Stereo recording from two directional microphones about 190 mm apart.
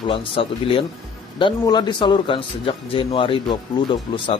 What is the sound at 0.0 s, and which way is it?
A man's voice, 30° left (ahead or behind).